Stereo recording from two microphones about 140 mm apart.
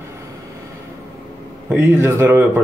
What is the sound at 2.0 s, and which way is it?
Speech, 15° right (ahead or behind).